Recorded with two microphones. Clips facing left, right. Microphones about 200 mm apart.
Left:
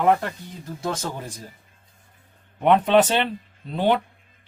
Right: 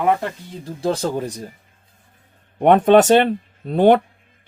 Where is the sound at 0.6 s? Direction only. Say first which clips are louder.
Right 7 dB; 30° right (ahead or behind).